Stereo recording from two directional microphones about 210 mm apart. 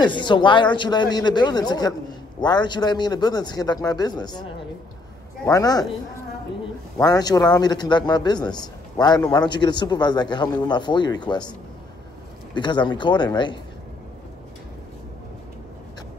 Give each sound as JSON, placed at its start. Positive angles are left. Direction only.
{"t": 0.0, "sound": "a man's voice", "side_deg": 20}
{"t": 7.0, "sound": "speech", "side_deg": 15}
{"t": 12.5, "sound": "speech", "side_deg": 20}